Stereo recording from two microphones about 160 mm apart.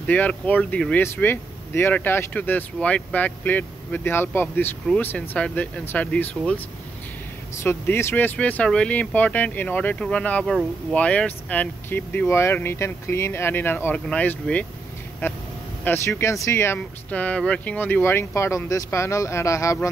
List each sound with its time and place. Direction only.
0.0 s speech: 10° left (ahead or behind)